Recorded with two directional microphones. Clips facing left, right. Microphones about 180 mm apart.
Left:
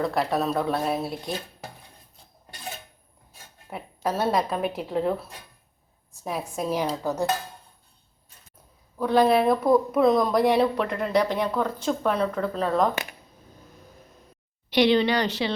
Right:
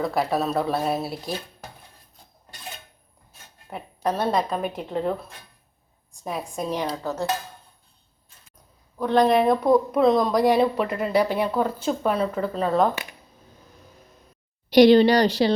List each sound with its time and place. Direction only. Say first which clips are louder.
0.0 s speech: right 1 dB; centre (ahead or behind)
3.7 s speech: right 2 dB; 5° left (ahead or behind)
9.0 s speech: right 1 dB; 10° left (ahead or behind)
14.7 s speech: right 6 dB; 40° right (ahead or behind)